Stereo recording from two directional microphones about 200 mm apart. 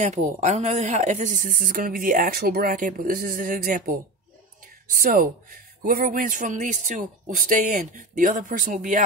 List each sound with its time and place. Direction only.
0.0 s speech: 35° right (ahead or behind)
5.0 s speech: 45° right (ahead or behind)